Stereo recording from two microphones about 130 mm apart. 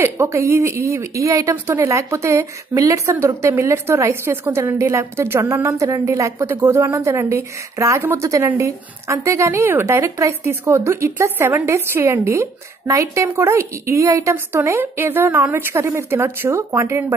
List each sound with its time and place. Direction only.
0.0 s a woman's voice: 20° right (ahead or behind)